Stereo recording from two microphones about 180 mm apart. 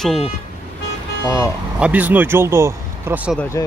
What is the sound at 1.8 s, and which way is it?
Speech, 10° right (ahead or behind).